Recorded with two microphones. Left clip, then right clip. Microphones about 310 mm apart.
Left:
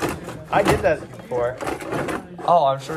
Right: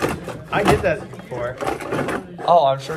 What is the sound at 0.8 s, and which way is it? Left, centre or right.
Speech, left.